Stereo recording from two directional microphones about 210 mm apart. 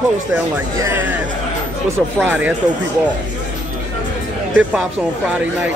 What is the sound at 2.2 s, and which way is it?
Speech, 10° right (ahead or behind).